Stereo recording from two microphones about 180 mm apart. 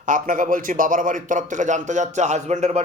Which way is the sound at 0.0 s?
45° right (ahead or behind).